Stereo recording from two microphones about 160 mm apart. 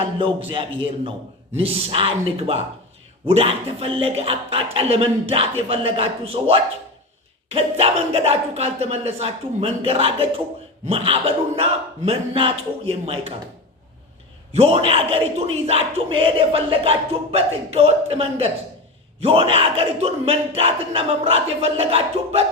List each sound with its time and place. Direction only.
1.5 s a man's voice: 35° right (ahead or behind)
14.5 s a man's voice: 40° right (ahead or behind)